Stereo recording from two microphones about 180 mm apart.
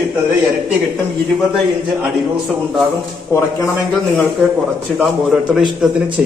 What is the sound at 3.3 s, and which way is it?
Speech, 15° left (ahead or behind).